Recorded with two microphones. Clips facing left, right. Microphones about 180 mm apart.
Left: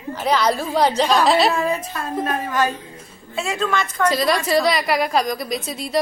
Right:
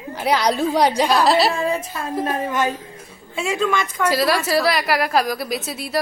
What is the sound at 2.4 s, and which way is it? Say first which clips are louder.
A woman's voice: even; 20° right (ahead or behind).